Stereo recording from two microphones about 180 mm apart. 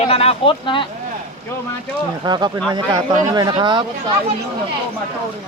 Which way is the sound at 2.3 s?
25° right (ahead or behind).